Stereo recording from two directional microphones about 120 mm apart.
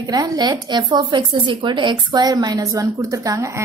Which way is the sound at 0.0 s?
30° right (ahead or behind).